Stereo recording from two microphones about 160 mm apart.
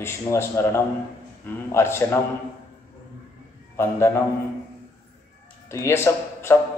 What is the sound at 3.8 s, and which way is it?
Speech, 15° left (ahead or behind).